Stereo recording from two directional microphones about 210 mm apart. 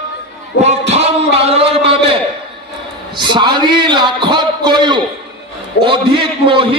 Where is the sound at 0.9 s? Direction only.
30° right (ahead or behind).